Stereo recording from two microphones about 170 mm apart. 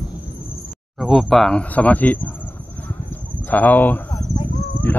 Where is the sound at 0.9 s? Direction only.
5° right (ahead or behind).